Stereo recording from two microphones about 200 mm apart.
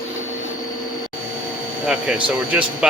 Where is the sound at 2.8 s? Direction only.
5° right (ahead or behind).